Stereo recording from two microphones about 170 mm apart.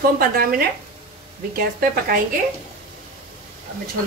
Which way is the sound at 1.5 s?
60° right (ahead or behind).